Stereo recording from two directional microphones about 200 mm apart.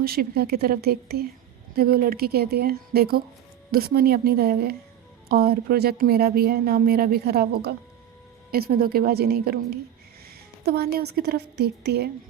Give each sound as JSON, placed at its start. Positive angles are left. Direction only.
{"t": 0.0, "sound": "a woman's voice", "side_deg": -50}